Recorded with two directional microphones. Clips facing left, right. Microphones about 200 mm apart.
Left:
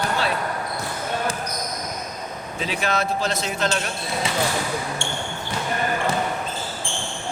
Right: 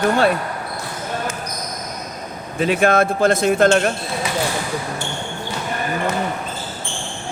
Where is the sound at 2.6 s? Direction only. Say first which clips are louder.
Right 9 dB; 55° right (ahead or behind).